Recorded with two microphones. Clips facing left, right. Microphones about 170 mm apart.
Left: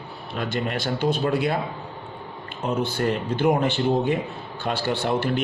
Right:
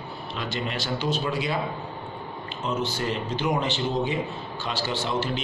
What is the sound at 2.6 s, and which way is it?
A man's voice, 55° left (ahead or behind).